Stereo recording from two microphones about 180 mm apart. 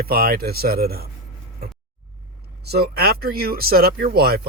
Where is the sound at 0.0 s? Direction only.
55° right (ahead or behind).